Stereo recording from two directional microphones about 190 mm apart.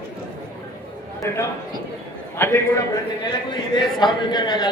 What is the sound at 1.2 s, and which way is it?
A man's voice, 15° left (ahead or behind).